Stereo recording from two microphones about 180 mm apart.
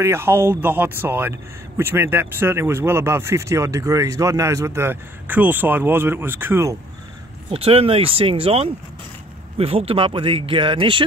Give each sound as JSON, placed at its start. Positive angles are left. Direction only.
{"t": 0.0, "sound": "speech", "side_deg": -15}
{"t": 7.5, "sound": "speech", "side_deg": -35}